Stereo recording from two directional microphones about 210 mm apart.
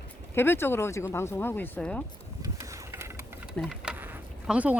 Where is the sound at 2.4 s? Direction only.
15° right (ahead or behind).